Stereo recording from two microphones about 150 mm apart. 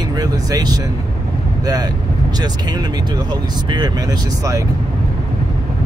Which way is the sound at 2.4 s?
25° right (ahead or behind).